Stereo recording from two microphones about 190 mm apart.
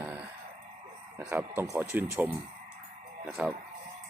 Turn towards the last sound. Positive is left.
turn(degrees=-5)  # may be behind; listen again after turning